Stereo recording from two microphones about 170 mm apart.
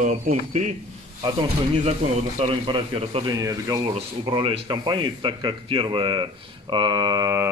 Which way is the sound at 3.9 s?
30° right (ahead or behind).